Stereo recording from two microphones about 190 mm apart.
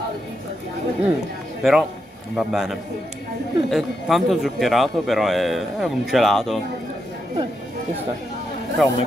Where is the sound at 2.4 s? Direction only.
Centre (ahead or behind).